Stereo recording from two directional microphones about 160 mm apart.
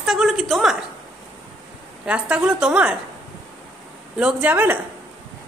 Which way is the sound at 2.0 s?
10° right (ahead or behind).